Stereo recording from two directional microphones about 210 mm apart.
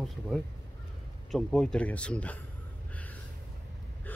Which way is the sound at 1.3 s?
Centre (ahead or behind).